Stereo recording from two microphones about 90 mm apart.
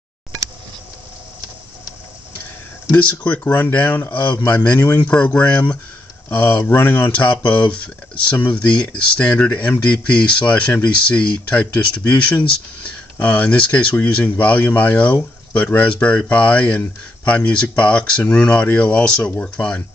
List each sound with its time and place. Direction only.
2.9 s speech: 25° left (ahead or behind)